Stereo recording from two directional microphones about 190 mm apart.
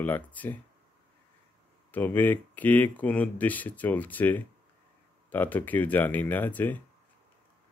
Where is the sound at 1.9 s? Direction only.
10° left (ahead or behind).